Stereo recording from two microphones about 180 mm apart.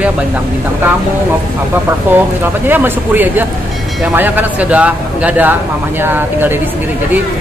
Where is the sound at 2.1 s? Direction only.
10° right (ahead or behind).